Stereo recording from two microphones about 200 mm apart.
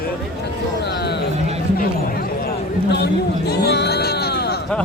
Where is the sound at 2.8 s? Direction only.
55° left (ahead or behind).